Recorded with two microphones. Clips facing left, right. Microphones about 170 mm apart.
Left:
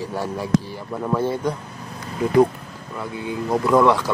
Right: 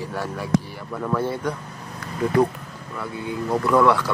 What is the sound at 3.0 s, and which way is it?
A man's voice, 20° left (ahead or behind).